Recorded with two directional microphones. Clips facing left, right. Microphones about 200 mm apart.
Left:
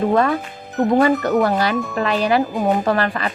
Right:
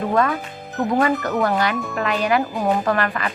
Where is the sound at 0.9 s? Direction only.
35° left (ahead or behind).